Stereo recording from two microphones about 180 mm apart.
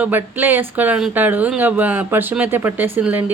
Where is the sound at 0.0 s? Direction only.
10° right (ahead or behind).